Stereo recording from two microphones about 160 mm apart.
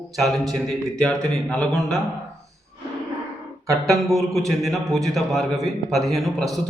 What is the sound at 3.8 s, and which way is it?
A man's voice, centre (ahead or behind).